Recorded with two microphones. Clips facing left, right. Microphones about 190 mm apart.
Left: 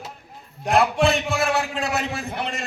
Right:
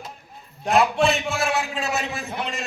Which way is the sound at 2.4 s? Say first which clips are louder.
Left 1 dB; 55° left (ahead or behind).